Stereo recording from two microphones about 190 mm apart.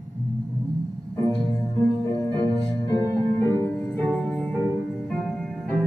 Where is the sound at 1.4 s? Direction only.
20° left (ahead or behind).